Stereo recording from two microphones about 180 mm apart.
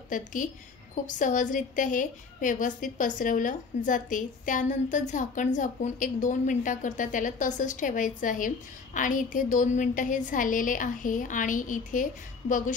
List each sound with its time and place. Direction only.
0.1 s a woman's voice: 45° left (ahead or behind)